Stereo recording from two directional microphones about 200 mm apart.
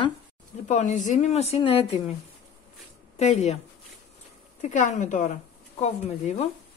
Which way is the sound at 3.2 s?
35° left (ahead or behind).